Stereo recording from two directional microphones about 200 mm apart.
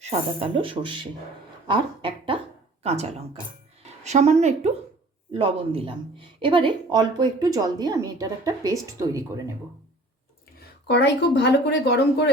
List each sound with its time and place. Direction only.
0.0 s a woman's voice: 35° right (ahead or behind); by 9.4 s 15° right (ahead or behind)
10.8 s speech: 60° left (ahead or behind)